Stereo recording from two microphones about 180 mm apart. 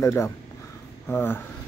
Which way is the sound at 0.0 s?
15° left (ahead or behind).